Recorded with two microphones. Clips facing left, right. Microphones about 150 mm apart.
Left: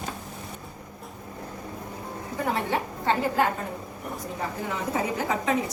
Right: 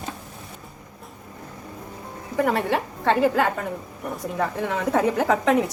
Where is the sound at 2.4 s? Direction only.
75° right (ahead or behind).